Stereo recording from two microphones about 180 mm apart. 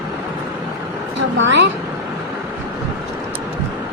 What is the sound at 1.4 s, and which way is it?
Speech, 90° right.